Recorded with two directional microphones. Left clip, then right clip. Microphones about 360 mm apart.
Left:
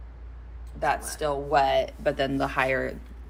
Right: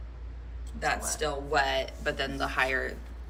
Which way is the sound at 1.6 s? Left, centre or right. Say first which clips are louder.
Left 5 dB; centre.